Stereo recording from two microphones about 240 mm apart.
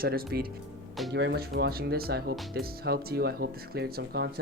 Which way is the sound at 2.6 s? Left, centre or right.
Right.